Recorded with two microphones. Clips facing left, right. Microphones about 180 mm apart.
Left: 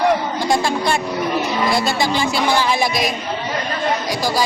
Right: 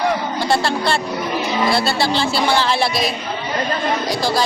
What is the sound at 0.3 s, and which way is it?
A woman's voice, 15° left (ahead or behind).